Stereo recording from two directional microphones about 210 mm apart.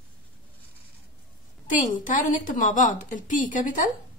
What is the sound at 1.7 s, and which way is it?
A woman's voice, 40° left (ahead or behind).